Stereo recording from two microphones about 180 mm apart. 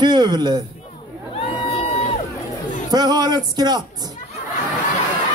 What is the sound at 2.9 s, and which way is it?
Speech, 20° right (ahead or behind).